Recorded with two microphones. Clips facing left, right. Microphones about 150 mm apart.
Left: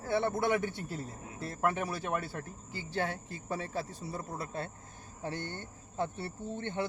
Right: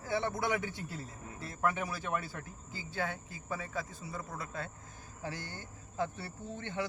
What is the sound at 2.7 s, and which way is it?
Speech, 70° left (ahead or behind).